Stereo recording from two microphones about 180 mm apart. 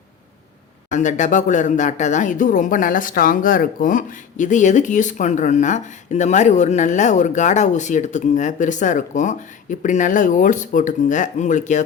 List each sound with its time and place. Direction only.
0.9 s speech: 45° left (ahead or behind)